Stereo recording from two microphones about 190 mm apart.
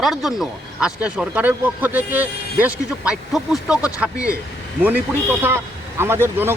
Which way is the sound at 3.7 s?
5° right (ahead or behind).